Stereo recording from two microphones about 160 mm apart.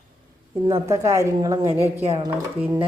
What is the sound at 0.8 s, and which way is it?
Speech, 20° right (ahead or behind).